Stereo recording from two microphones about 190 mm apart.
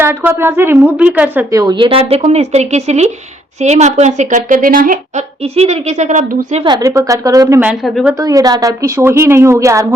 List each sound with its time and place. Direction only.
0.0 s a woman's voice: 10° right (ahead or behind); by 5.2 s 45° right (ahead or behind)
5.4 s a woman's voice: 35° right (ahead or behind)
6.7 s speech: 20° right (ahead or behind)
7.4 s a woman's voice: 10° right (ahead or behind)
8.2 s a woman's voice: 20° right (ahead or behind)